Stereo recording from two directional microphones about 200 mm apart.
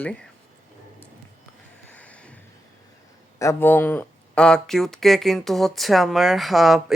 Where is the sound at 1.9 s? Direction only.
5° left (ahead or behind).